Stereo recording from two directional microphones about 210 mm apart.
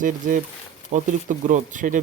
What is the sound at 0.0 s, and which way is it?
Speech, 40° right (ahead or behind).